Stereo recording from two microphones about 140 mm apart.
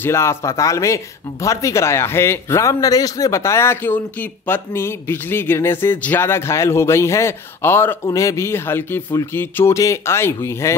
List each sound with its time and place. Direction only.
0.0 s speech: 20° left (ahead or behind)